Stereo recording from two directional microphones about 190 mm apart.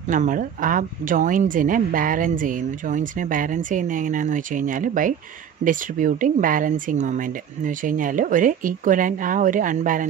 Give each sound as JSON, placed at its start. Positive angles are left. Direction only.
{"t": 0.1, "sound": "speech", "side_deg": -45}